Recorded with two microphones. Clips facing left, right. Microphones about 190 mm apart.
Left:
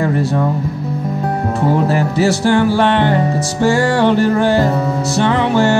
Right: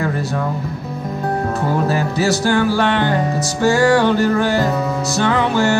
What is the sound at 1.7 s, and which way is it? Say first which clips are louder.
Music: left 4 dB; 25° left (ahead or behind).